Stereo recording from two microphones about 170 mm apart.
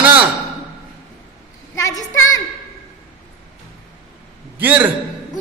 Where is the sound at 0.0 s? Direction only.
10° right (ahead or behind).